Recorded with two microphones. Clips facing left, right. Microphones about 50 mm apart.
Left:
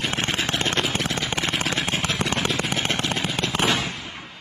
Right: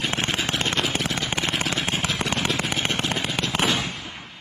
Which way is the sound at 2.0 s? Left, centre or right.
Left.